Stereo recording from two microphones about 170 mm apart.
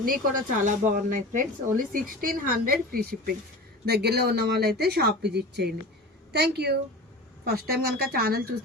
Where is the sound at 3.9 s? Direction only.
70° right (ahead or behind).